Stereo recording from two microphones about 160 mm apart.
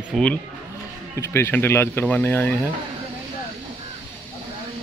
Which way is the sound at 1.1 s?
15° left (ahead or behind).